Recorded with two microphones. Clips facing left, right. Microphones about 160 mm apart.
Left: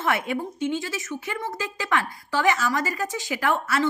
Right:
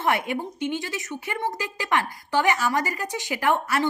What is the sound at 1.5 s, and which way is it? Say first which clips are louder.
A woman's voice: even; 20° right (ahead or behind).